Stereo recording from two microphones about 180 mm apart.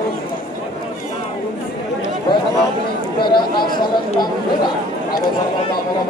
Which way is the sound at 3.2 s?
25° left (ahead or behind).